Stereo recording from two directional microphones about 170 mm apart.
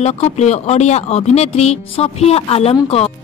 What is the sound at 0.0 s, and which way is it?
Speech, 40° left (ahead or behind).